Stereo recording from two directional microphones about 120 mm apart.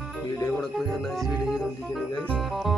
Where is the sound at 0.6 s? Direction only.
Centre (ahead or behind).